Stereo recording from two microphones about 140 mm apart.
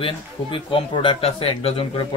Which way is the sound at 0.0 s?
40° left (ahead or behind).